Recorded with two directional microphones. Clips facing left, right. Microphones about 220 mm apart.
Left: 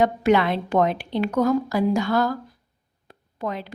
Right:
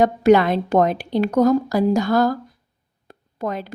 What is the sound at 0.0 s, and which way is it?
A woman's voice, 40° right (ahead or behind).